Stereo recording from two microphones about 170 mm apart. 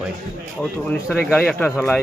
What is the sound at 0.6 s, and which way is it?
Speech, 10° left (ahead or behind).